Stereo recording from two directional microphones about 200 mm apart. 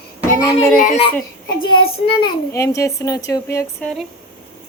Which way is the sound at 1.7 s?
25° left (ahead or behind).